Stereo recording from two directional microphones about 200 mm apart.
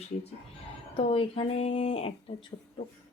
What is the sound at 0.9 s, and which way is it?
Speech, 25° left (ahead or behind).